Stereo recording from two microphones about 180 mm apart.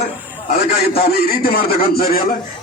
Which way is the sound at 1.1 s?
55° left (ahead or behind).